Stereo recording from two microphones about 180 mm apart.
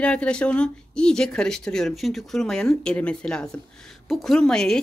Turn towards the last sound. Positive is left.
turn(degrees=5)  # may be behind; listen again after turning